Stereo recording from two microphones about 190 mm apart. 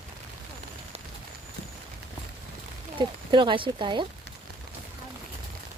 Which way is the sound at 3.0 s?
25° right (ahead or behind).